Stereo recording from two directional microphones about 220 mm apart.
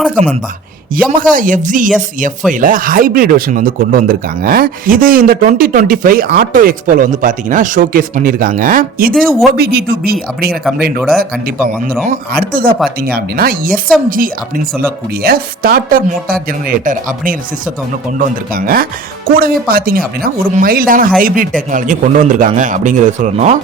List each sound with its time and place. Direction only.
1.0 s speech: 40° right (ahead or behind)
9.1 s speech: centre (ahead or behind)
9.5 s speech: 45° right (ahead or behind)
15.2 s speech: 40° right (ahead or behind)